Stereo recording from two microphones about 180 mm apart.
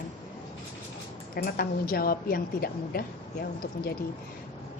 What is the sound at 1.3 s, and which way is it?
A woman's voice, 55° left (ahead or behind).